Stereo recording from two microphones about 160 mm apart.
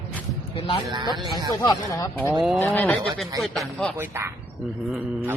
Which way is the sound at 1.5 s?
25° left (ahead or behind).